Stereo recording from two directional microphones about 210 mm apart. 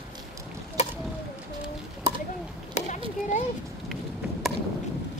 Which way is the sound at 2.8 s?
35° left (ahead or behind).